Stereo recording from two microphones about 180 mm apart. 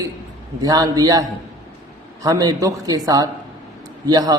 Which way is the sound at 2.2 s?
20° right (ahead or behind).